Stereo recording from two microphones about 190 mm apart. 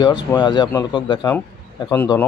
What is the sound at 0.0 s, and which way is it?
Speech, 20° left (ahead or behind).